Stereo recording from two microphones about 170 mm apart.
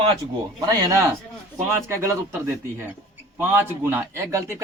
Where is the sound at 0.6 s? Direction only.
20° right (ahead or behind).